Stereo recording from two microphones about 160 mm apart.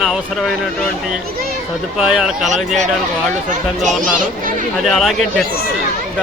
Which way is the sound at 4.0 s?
55° right (ahead or behind).